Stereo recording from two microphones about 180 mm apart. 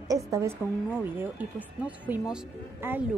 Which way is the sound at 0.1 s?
15° right (ahead or behind).